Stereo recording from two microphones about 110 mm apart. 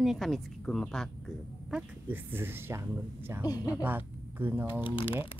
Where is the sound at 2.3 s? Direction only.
20° right (ahead or behind).